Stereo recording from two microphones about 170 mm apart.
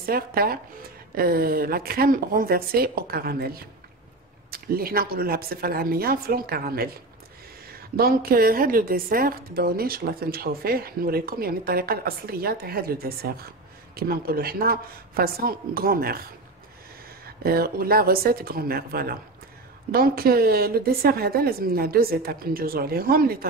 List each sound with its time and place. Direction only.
0.0 s a woman's voice: 60° right (ahead or behind)
17.4 s a woman's voice: 60° right (ahead or behind)